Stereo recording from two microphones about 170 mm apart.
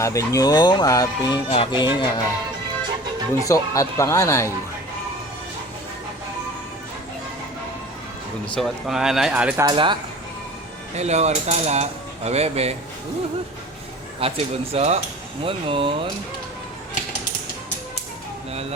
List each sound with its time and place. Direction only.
0.0 s speech: 20° left (ahead or behind)
3.4 s speech: 20° left (ahead or behind)
8.5 s speech: centre (ahead or behind)
9.6 s speech: 30° right (ahead or behind)
10.9 s speech: 40° right (ahead or behind)
14.2 s speech: 35° right (ahead or behind)